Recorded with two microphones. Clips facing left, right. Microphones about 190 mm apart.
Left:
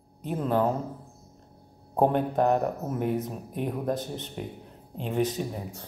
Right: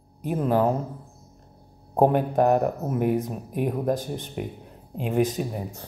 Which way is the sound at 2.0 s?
10° right (ahead or behind).